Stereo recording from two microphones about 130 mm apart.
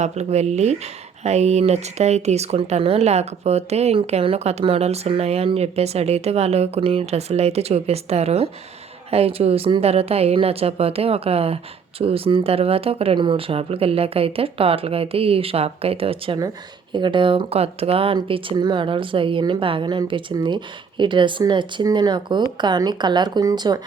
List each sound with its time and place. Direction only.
0.0 s a woman's voice: 60° right (ahead or behind); by 23.8 s 30° right (ahead or behind)